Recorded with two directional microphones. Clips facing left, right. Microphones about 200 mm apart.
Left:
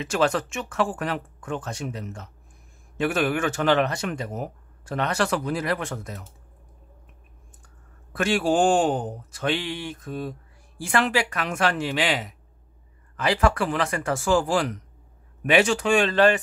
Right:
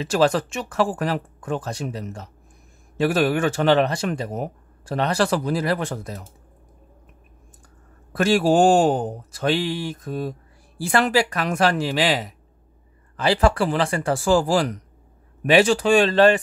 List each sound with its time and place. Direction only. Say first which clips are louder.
0.0 s speech: right 4 dB; 35° right (ahead or behind)
8.1 s speech: right 4 dB; 40° right (ahead or behind)